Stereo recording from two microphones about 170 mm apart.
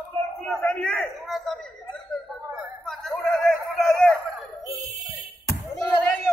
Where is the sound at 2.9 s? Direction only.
Centre (ahead or behind).